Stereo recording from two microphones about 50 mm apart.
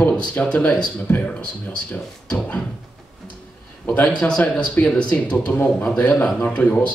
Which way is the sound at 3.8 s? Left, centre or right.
Left.